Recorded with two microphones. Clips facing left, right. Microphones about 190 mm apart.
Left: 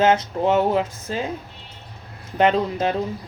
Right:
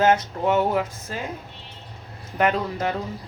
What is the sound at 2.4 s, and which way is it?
Speech, 25° left (ahead or behind).